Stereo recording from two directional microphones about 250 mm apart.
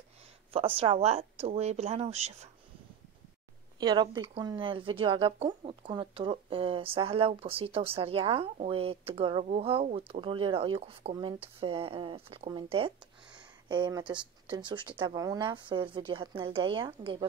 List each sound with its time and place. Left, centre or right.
0.5 s speech: right
3.8 s speech: centre